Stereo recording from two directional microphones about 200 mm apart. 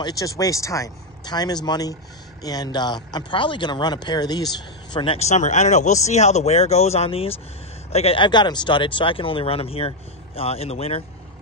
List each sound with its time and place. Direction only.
0.0 s speech: 20° left (ahead or behind)